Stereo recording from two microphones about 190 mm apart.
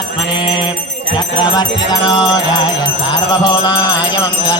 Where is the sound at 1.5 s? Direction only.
20° left (ahead or behind).